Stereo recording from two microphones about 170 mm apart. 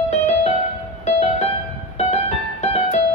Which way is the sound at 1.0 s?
40° left (ahead or behind).